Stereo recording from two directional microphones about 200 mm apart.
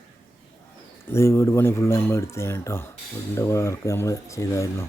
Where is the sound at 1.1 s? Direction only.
15° left (ahead or behind).